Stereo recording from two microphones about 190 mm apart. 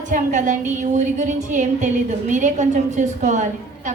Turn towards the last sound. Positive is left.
turn(degrees=-40)  # may be behind; listen again after turning